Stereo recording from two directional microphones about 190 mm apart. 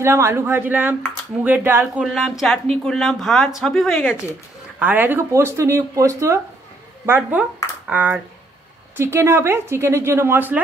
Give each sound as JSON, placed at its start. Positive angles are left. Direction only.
{"t": 0.0, "sound": "speech", "side_deg": -15}